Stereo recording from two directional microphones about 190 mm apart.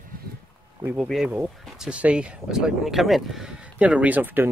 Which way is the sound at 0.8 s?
10° right (ahead or behind).